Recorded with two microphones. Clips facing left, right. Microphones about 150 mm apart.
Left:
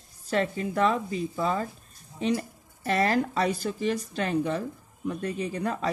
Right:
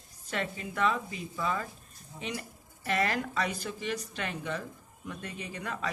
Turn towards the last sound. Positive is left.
turn(degrees=35)  # may be behind; listen again after turning